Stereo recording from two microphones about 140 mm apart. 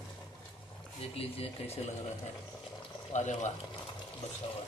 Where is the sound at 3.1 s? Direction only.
60° left (ahead or behind).